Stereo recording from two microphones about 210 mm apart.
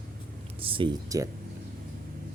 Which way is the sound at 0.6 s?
25° right (ahead or behind).